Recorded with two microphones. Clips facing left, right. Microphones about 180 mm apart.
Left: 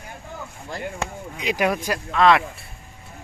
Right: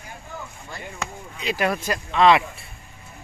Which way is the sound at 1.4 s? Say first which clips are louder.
Left 2 dB; 15° left (ahead or behind).